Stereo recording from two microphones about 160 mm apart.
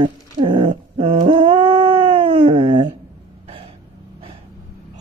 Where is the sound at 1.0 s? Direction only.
30° right (ahead or behind).